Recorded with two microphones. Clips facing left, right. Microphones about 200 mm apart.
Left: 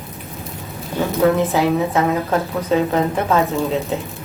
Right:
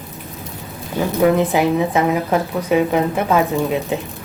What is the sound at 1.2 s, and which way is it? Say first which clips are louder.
A woman's voice: right 1 dB; 15° right (ahead or behind).